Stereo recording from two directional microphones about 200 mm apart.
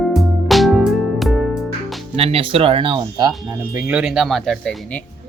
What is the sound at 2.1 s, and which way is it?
Speech, 30° right (ahead or behind).